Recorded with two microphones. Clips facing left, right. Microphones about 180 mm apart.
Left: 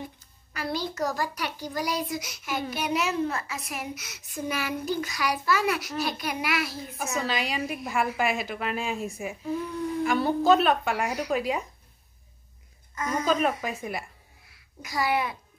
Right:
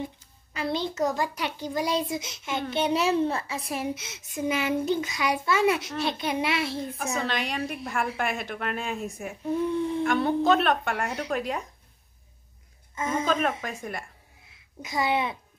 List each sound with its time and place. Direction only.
0.5 s speech: 25° right (ahead or behind)
7.2 s speech: 5° left (ahead or behind)
9.7 s humming: 25° right (ahead or behind)
10.0 s speech: 5° left (ahead or behind)
12.9 s a woman's voice: 25° right (ahead or behind)
13.3 s speech: 5° left (ahead or behind)
14.8 s speech: 25° right (ahead or behind)